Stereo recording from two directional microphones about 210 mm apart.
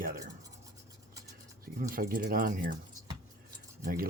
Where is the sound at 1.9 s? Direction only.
40° right (ahead or behind).